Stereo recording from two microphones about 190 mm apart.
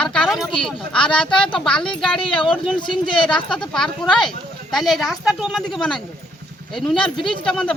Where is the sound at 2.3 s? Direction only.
25° left (ahead or behind).